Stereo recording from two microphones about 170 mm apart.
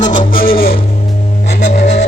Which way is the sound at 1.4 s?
45° left (ahead or behind).